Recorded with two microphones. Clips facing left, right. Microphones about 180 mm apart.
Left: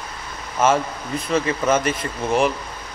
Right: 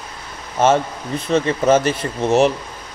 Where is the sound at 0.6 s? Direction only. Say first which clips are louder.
Right 3 dB; 25° right (ahead or behind).